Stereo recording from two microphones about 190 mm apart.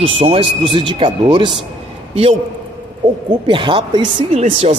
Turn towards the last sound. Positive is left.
turn(degrees=-25)  # may be behind; listen again after turning